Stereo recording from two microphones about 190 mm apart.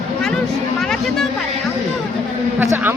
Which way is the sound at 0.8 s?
Centre (ahead or behind).